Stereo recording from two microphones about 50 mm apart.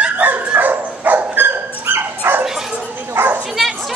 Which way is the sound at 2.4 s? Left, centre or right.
Centre.